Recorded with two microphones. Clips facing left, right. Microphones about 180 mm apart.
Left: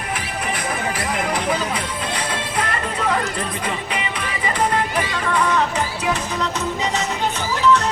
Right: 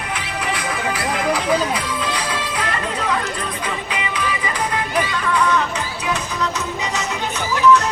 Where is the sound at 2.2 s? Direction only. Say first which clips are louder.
Even; 55° left (ahead or behind).